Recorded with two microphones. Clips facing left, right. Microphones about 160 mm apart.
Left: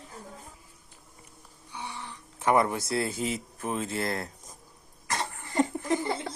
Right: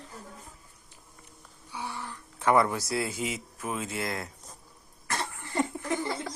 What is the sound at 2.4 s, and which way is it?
Speech, 20° left (ahead or behind).